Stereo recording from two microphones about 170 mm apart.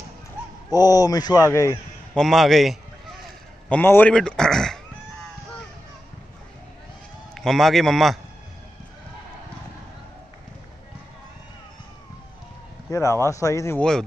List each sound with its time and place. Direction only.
0.7 s speech: 20° left (ahead or behind)
2.1 s a man's voice: centre (ahead or behind)
3.6 s a man's voice: 10° left (ahead or behind)
7.3 s a man's voice: centre (ahead or behind)
12.9 s speech: 15° left (ahead or behind)
13.7 s a man's voice: 5° left (ahead or behind)